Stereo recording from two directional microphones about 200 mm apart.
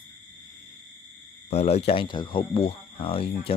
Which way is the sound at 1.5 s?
30° left (ahead or behind).